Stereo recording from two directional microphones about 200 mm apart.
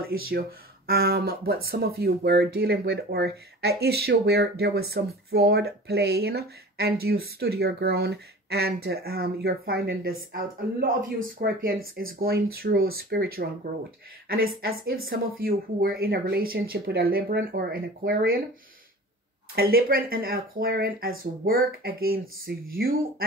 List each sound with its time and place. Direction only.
0.8 s speech: 50° right (ahead or behind)
19.5 s speech: 50° right (ahead or behind)